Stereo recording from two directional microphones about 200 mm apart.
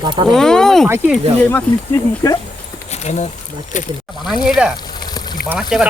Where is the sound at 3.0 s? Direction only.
35° left (ahead or behind).